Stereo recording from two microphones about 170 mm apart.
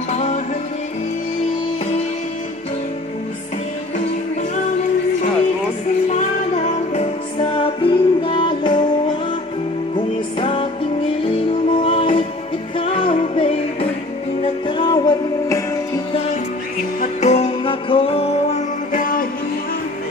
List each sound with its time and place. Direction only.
0.1 s music: 40° left (ahead or behind)
6.9 s music: 35° left (ahead or behind)
17.0 s music: 40° left (ahead or behind)
18.9 s music: 55° left (ahead or behind)